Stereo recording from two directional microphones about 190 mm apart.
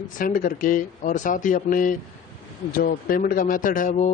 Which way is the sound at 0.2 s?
45° left (ahead or behind).